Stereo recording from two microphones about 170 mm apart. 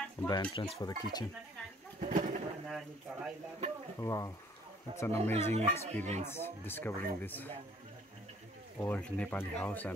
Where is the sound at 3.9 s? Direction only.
20° left (ahead or behind).